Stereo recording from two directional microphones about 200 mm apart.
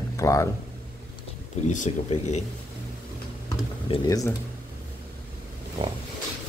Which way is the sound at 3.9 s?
15° left (ahead or behind).